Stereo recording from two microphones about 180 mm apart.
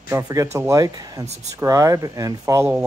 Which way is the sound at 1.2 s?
35° right (ahead or behind).